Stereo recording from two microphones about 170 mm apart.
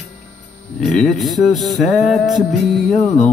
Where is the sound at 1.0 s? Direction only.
Centre (ahead or behind).